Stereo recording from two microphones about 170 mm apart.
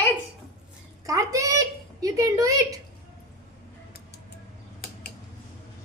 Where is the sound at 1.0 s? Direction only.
20° right (ahead or behind).